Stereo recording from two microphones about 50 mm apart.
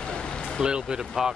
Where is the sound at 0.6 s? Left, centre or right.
Centre.